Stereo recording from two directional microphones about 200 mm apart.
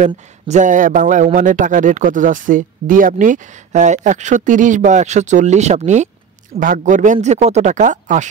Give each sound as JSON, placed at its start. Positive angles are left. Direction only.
{"t": 0.0, "sound": "a man's voice", "side_deg": -40}